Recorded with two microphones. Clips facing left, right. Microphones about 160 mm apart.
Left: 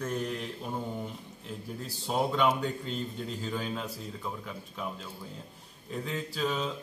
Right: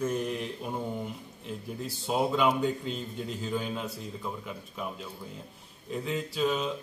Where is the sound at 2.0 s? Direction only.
Centre (ahead or behind).